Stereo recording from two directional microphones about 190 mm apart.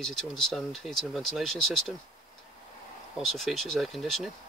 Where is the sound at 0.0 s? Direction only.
Centre (ahead or behind).